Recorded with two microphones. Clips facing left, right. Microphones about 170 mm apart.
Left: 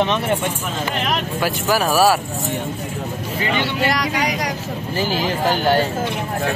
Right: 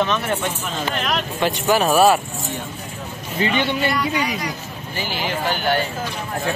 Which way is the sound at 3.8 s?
90° left.